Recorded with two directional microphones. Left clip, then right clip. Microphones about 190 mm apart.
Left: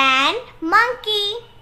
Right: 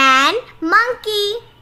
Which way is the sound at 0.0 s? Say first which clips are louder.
Right 4 dB; 25° right (ahead or behind).